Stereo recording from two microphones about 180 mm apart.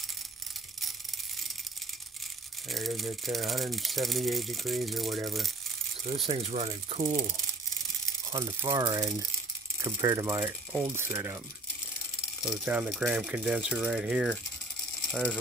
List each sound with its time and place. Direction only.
2.7 s speech: centre (ahead or behind)
6.2 s speech: 30° right (ahead or behind)
8.3 s speech: 20° right (ahead or behind)
12.4 s speech: 5° right (ahead or behind)
15.0 s mechanisms: 5° left (ahead or behind)